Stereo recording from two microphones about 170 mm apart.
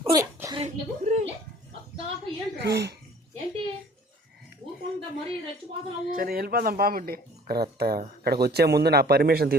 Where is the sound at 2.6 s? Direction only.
70° right (ahead or behind).